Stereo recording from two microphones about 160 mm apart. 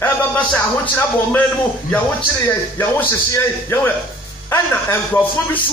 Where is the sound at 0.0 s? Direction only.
10° left (ahead or behind).